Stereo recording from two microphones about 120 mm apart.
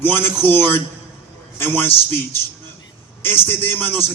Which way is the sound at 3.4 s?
15° left (ahead or behind).